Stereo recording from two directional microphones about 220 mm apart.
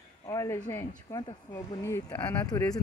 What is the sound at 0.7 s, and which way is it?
Speech, 15° left (ahead or behind).